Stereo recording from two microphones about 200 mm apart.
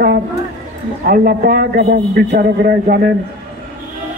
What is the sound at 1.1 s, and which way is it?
A man's voice, 50° right (ahead or behind).